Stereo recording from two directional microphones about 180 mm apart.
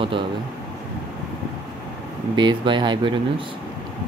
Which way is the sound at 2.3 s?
25° right (ahead or behind).